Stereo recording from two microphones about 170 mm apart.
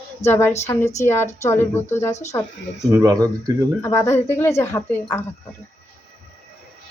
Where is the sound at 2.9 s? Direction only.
20° right (ahead or behind).